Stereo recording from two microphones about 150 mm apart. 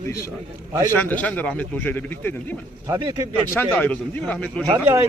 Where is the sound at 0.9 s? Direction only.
10° left (ahead or behind).